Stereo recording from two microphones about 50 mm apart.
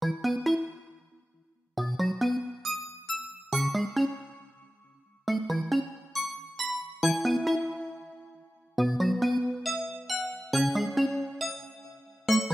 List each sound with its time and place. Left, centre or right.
0.0 s music: centre
1.8 s music: centre
5.2 s music: centre